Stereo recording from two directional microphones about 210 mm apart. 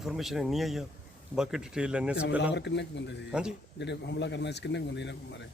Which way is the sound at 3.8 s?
55° left (ahead or behind).